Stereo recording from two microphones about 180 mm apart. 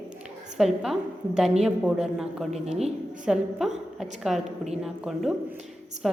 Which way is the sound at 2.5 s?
35° right (ahead or behind).